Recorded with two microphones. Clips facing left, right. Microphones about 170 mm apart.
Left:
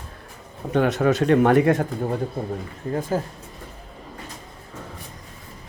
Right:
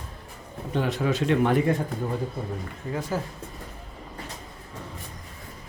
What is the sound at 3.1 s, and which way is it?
Speech, 50° left (ahead or behind).